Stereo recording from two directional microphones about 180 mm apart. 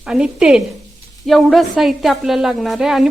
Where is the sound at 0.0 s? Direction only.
5° right (ahead or behind).